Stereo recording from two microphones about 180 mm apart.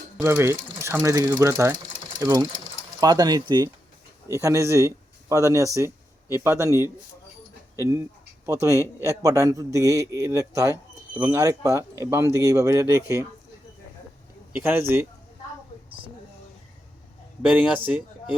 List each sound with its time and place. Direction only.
0.2 s a man's voice: 15° right (ahead or behind)
1.7 s sewing machine: 25° right (ahead or behind)
3.0 s a man's voice: 20° right (ahead or behind)
14.5 s a man's voice: 10° right (ahead or behind)
17.8 s speech: 5° right (ahead or behind)